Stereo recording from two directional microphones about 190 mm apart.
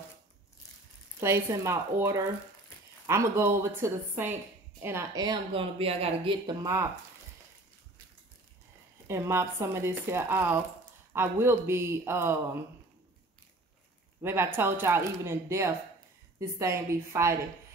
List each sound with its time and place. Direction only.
1.2 s speech: 15° right (ahead or behind)
9.0 s speech: 15° right (ahead or behind)
14.2 s speech: 10° right (ahead or behind)